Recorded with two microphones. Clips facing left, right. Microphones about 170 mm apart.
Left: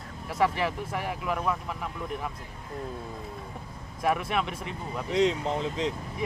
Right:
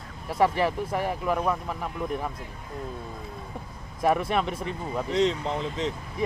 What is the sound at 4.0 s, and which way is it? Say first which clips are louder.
Speech: right 3 dB; 35° right (ahead or behind).